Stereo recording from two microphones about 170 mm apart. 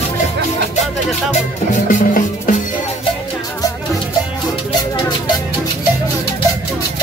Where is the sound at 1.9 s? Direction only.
50° left (ahead or behind).